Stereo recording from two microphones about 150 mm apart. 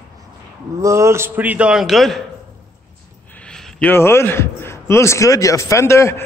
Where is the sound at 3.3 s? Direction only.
10° left (ahead or behind).